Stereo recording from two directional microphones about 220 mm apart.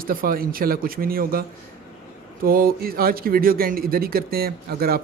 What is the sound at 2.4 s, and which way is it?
A man's voice, 40° right (ahead or behind).